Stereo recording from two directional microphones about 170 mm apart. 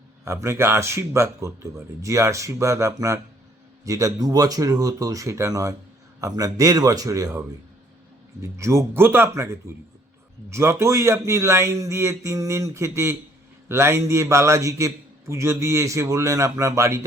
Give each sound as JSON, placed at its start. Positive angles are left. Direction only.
{"t": 0.3, "sound": "a man's voice", "side_deg": -15}